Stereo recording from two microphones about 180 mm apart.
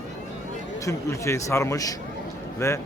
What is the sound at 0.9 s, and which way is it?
A man's voice, 15° left (ahead or behind).